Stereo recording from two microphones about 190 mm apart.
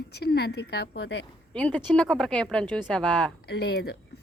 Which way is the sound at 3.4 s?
55° left (ahead or behind).